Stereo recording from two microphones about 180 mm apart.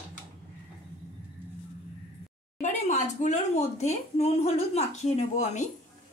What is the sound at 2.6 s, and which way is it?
A woman's voice, 40° left (ahead or behind).